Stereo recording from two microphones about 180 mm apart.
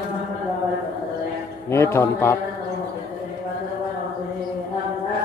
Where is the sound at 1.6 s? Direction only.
15° left (ahead or behind).